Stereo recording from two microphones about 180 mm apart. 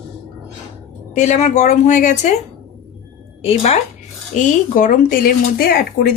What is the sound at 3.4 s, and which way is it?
A woman's voice, 35° left (ahead or behind).